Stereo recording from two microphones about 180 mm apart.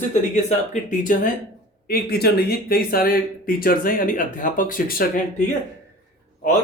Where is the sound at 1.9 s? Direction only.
60° left (ahead or behind).